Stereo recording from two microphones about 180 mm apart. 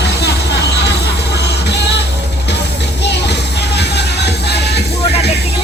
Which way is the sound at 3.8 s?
65° left (ahead or behind).